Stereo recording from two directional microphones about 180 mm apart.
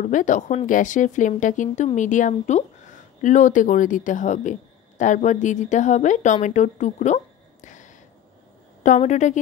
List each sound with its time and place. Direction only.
0.0 s speech: 45° left (ahead or behind)
7.6 s a sound: 45° left (ahead or behind)
8.8 s a woman's voice: 40° left (ahead or behind)